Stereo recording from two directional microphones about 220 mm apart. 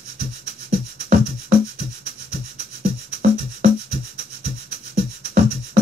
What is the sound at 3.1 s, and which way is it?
Rub, 40° right (ahead or behind).